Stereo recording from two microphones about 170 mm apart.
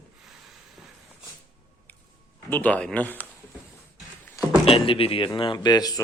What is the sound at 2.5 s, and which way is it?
Speech, 10° left (ahead or behind).